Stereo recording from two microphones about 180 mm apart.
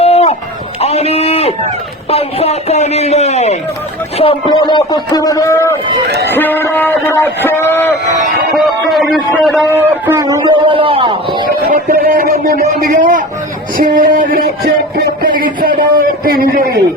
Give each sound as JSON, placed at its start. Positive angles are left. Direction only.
{"t": 0.0, "sound": "a sound", "side_deg": 35}
{"t": 2.0, "sound": "a man's voice", "side_deg": 35}
{"t": 8.5, "sound": "speech", "side_deg": 0}
{"t": 9.7, "sound": "a man's voice", "side_deg": -15}
{"t": 11.6, "sound": "a man's voice", "side_deg": -50}
{"t": 12.6, "sound": "a man's voice", "side_deg": -45}